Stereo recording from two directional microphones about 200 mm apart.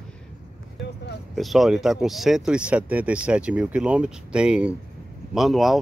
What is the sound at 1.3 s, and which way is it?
Speech, centre (ahead or behind).